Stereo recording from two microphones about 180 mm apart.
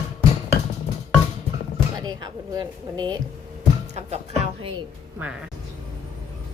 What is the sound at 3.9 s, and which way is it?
Speech, 35° right (ahead or behind).